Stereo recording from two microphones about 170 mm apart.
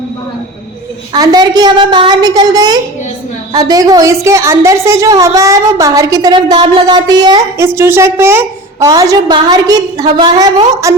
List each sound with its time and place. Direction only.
1.1 s a woman's voice: 20° right (ahead or behind)